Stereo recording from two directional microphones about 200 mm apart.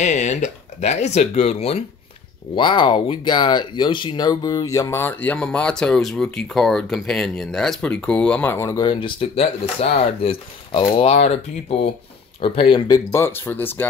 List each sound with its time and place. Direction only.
0.0 s speech: 35° left (ahead or behind)
12.4 s speech: 25° left (ahead or behind); by 13.8 s 10° left (ahead or behind)